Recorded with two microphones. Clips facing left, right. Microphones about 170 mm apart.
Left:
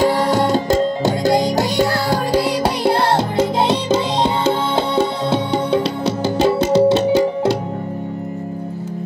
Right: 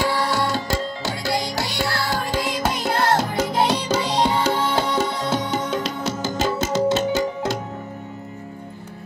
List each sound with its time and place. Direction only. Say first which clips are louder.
0.0 s music: left 7 dB; 45° left (ahead or behind)